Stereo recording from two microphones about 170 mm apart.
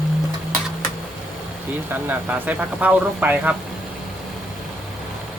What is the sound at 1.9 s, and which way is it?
Speech, 10° right (ahead or behind).